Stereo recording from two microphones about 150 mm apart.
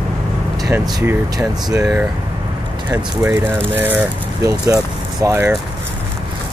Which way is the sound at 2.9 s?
15° right (ahead or behind).